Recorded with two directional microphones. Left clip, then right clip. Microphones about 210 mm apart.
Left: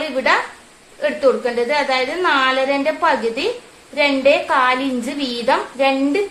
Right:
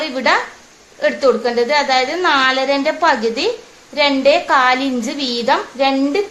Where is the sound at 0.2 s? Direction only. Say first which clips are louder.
Right 1 dB; 35° right (ahead or behind).